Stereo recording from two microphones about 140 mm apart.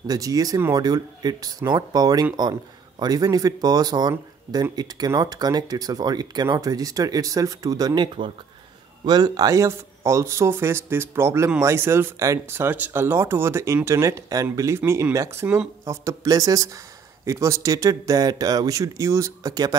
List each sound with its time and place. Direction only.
0.0 s speech: 25° right (ahead or behind)
15.8 s speech: 20° right (ahead or behind)